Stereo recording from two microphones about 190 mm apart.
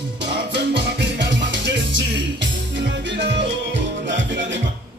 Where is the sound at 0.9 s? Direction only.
70° right (ahead or behind).